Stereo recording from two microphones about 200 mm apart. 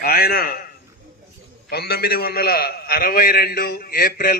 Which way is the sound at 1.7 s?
55° left (ahead or behind).